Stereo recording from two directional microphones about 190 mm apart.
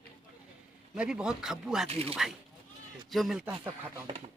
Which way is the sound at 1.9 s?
30° right (ahead or behind).